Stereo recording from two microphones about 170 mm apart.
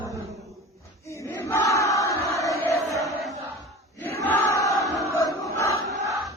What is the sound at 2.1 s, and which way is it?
Music, 20° left (ahead or behind).